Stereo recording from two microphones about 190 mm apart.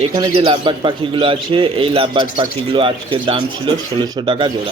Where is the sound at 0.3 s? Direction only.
25° right (ahead or behind).